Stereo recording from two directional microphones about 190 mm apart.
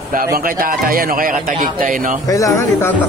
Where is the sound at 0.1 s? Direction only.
50° right (ahead or behind).